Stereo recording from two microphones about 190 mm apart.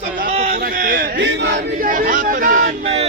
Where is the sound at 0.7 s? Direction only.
50° right (ahead or behind).